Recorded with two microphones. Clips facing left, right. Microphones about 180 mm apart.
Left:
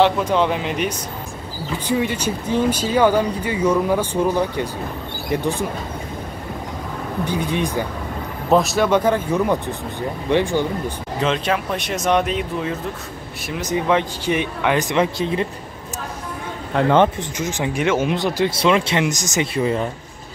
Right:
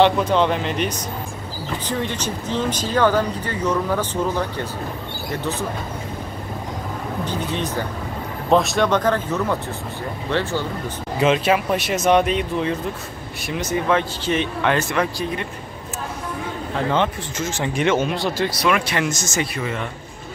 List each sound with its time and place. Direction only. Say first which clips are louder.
0.0 s speech: even; 10° left (ahead or behind)
7.2 s speech: left 4 dB; 10° left (ahead or behind)
8.5 s speech: left 1 dB; centre (ahead or behind)
11.1 s speech: right 3 dB; 10° right (ahead or behind)
13.7 s speech: left 2 dB; 15° left (ahead or behind)
17.4 s speech: even; 15° left (ahead or behind); by 19.9 s 35° left (ahead or behind)